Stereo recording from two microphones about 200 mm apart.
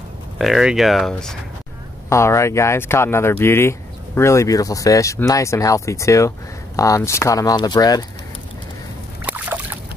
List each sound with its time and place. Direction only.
0.4 s speech: centre (ahead or behind)
2.0 s speech: 15° left (ahead or behind)
9.2 s boat: 10° right (ahead or behind)